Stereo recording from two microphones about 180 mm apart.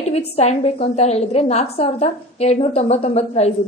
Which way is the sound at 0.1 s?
35° left (ahead or behind).